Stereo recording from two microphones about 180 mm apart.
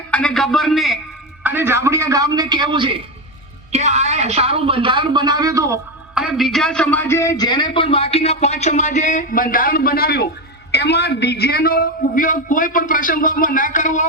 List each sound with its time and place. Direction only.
0.1 s a man's voice: 5° left (ahead or behind)
1.5 s a man's voice: 10° right (ahead or behind); by 3.0 s 30° right (ahead or behind)
3.7 s a man's voice: 40° right (ahead or behind); by 5.8 s 15° right (ahead or behind)
6.1 s a man's voice: centre (ahead or behind); by 14.1 s 45° left (ahead or behind)